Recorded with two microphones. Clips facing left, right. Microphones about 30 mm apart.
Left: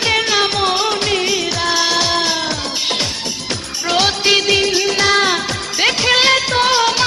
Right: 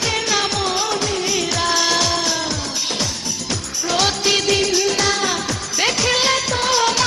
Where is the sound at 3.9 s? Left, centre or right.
Left.